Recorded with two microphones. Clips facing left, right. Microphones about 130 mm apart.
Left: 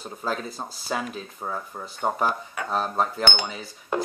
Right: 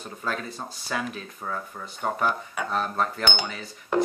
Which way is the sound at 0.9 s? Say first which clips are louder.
Left 1 dB; 20° left (ahead or behind).